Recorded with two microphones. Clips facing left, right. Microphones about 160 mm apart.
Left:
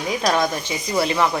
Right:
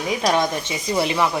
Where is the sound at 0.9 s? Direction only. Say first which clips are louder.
Left 1 dB; 10° right (ahead or behind).